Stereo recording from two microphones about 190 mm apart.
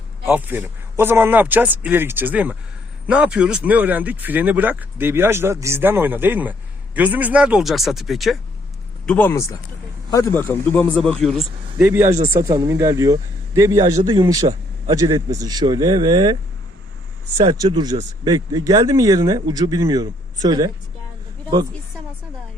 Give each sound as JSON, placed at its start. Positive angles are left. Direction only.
{"t": 0.3, "sound": "a man's voice", "side_deg": -10}
{"t": 11.8, "sound": "speech", "side_deg": -15}
{"t": 17.4, "sound": "speech", "side_deg": -20}